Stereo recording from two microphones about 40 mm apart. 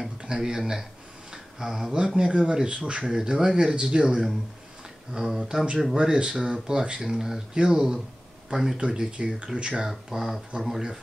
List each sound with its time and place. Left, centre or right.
0.2 s speech: centre
3.1 s speech: centre
5.9 s speech: right
7.0 s speech: centre
8.7 s speech: right
9.8 s speech: centre
10.5 s speech: right